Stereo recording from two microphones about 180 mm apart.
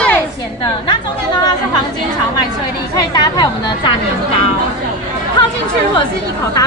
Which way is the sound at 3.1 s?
25° left (ahead or behind).